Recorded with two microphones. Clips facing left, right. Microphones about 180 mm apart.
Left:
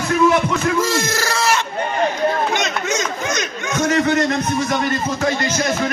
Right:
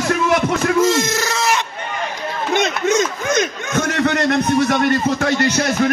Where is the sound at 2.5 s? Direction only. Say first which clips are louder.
Right 4 dB; 55° right (ahead or behind).